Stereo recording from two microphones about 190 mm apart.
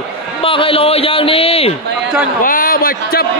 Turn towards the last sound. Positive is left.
turn(degrees=50)  # may be behind; listen again after turning